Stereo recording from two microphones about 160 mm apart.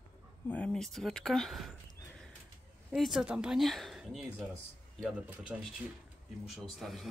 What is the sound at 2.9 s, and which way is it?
Speech, centre (ahead or behind).